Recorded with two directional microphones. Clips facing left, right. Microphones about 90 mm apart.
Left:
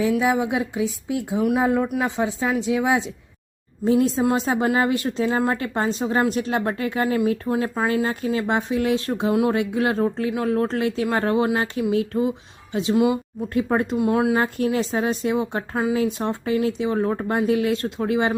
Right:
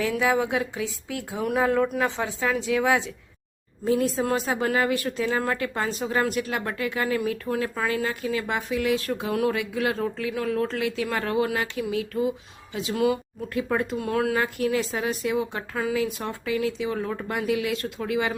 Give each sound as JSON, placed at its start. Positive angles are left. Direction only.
{"t": 0.0, "sound": "a woman's voice", "side_deg": 20}
{"t": 14.4, "sound": "a woman's voice", "side_deg": 30}